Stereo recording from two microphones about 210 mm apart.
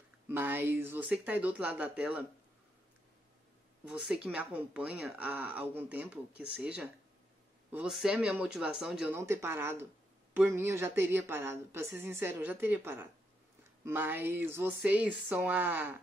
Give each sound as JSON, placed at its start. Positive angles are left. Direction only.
{"t": 0.3, "sound": "speech", "side_deg": -10}
{"t": 3.8, "sound": "speech", "side_deg": -5}